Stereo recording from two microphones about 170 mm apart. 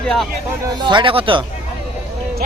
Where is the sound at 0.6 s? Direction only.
25° right (ahead or behind).